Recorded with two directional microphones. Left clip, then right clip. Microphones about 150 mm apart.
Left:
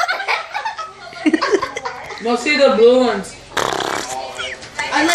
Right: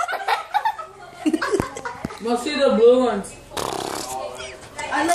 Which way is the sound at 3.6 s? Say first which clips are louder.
Left 7 dB; 5° left (ahead or behind).